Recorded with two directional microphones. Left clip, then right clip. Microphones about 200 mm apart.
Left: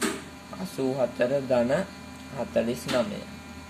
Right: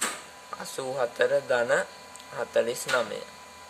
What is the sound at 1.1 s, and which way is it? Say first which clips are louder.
Speech: right 2 dB; 60° right (ahead or behind).